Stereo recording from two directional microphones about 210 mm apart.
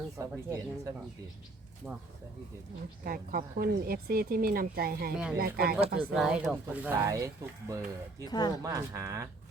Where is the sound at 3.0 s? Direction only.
45° right (ahead or behind).